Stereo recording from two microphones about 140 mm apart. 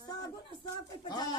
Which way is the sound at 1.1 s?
30° left (ahead or behind).